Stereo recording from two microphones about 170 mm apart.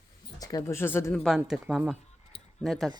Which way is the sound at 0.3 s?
20° left (ahead or behind).